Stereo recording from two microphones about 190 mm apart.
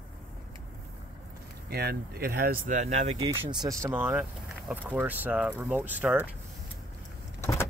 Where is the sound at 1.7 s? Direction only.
55° right (ahead or behind); by 3.2 s 35° right (ahead or behind).